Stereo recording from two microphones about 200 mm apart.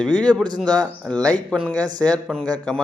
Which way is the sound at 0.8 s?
5° left (ahead or behind).